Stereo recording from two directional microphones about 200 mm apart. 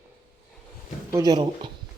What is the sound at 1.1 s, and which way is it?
Speech, 20° right (ahead or behind).